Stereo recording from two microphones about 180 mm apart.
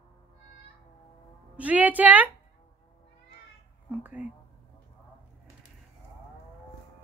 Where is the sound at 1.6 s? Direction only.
10° right (ahead or behind).